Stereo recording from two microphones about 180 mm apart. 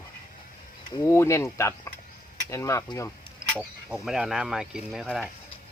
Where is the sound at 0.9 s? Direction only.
25° left (ahead or behind).